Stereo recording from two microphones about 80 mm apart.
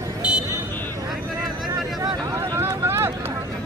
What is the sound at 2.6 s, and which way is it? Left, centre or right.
Vehicle, right.